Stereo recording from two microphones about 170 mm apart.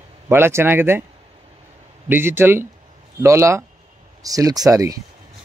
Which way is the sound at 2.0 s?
15° right (ahead or behind).